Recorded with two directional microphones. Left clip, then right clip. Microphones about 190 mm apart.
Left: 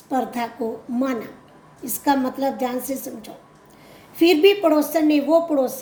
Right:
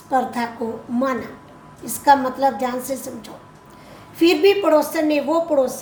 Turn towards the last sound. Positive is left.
turn(degrees=60)  # may be behind; listen again after turning